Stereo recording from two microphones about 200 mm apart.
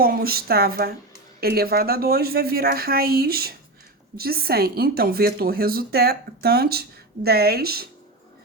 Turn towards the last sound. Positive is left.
turn(degrees=-50)  # may be behind; listen again after turning